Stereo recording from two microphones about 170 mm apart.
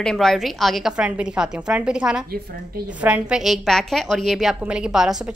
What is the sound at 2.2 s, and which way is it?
Speech, 65° right (ahead or behind).